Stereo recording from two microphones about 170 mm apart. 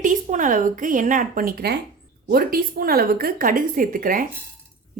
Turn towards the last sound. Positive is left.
turn(degrees=-55)  # may be behind; listen again after turning